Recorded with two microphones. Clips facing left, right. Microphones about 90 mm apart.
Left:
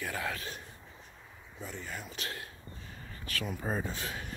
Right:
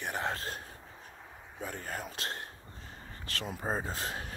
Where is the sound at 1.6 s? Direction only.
50° right (ahead or behind).